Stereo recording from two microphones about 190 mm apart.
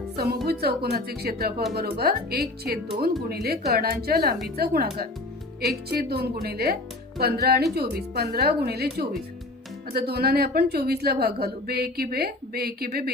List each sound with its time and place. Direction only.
0.1 s music: 55° right (ahead or behind)
0.5 s a woman's voice: 55° right (ahead or behind)